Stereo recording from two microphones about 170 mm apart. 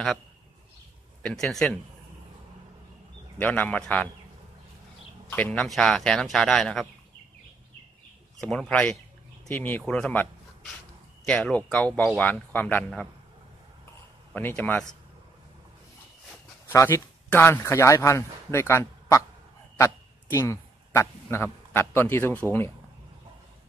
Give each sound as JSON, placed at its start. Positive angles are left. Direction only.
{"t": 1.2, "sound": "speech", "side_deg": 5}
{"t": 3.3, "sound": "speech", "side_deg": 10}
{"t": 5.3, "sound": "speech", "side_deg": 10}
{"t": 8.4, "sound": "speech", "side_deg": 5}
{"t": 11.2, "sound": "speech", "side_deg": 5}
{"t": 14.3, "sound": "speech", "side_deg": 10}
{"t": 16.6, "sound": "speech", "side_deg": 15}